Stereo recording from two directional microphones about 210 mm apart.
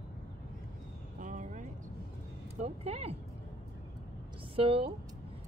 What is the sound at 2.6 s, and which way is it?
Speech, 30° right (ahead or behind).